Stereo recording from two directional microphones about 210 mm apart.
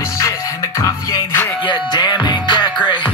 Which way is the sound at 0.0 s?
15° left (ahead or behind).